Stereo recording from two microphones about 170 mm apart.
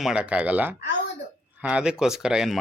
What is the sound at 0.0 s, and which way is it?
Speech, 5° right (ahead or behind).